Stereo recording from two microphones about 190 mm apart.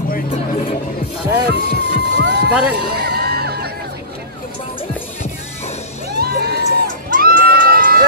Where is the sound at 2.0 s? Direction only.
60° right (ahead or behind).